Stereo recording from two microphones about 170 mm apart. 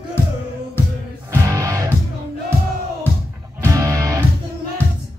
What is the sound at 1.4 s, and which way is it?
Music, 20° right (ahead or behind).